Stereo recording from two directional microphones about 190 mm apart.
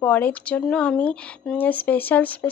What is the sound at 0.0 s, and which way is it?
Speech, 10° left (ahead or behind).